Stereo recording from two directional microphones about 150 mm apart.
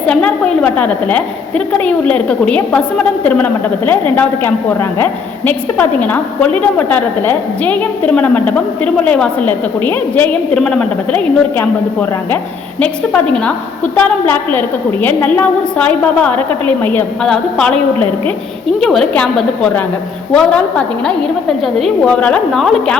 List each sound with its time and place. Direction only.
0.1 s a woman's voice: 10° left (ahead or behind)